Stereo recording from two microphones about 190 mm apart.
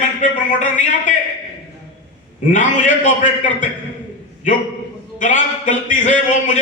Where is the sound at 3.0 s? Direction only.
40° left (ahead or behind).